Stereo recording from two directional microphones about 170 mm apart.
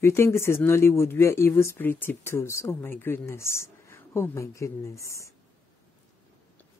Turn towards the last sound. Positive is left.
turn(degrees=15)  # may be behind; listen again after turning